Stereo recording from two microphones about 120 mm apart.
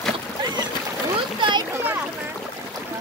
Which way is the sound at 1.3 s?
40° right (ahead or behind).